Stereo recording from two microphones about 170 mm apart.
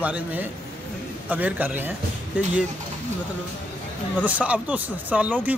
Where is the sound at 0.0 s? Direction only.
10° right (ahead or behind).